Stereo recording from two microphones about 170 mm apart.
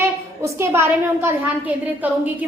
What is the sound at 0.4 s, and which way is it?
A woman's voice, 15° right (ahead or behind).